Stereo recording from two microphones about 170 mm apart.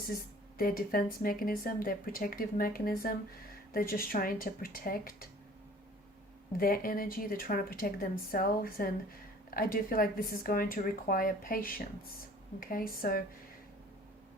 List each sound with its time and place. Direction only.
0.6 s speech: 60° left (ahead or behind)
6.6 s speech: 60° left (ahead or behind)